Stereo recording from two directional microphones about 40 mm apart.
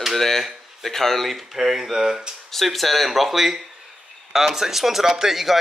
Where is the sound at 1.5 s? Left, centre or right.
Centre.